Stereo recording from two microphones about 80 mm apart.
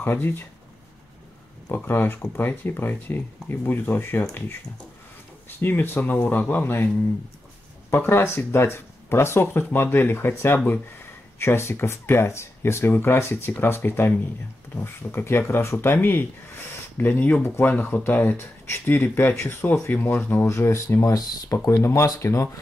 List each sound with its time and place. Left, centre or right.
0.0 s speech: left
1.9 s speech: left
5.6 s speech: left
7.9 s speech: left